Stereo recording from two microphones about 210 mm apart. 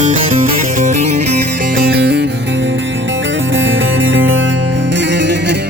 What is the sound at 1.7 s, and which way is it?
Music, 50° right (ahead or behind).